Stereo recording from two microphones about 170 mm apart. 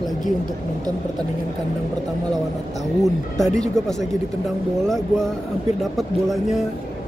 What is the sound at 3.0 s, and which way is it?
Speech, centre (ahead or behind).